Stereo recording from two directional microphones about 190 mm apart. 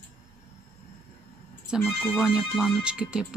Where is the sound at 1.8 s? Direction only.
10° left (ahead or behind).